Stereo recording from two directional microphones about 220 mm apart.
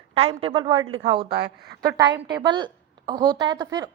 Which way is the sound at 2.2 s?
20° right (ahead or behind).